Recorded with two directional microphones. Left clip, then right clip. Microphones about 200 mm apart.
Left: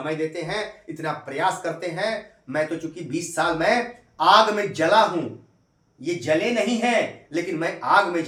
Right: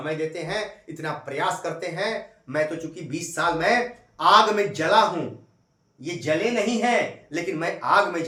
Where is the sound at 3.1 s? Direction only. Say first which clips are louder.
Left 1 dB; 15° right (ahead or behind).